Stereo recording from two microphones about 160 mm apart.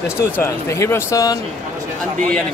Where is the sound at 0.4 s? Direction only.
15° left (ahead or behind).